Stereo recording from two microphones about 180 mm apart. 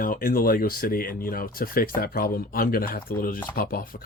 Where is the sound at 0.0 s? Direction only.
50° left (ahead or behind).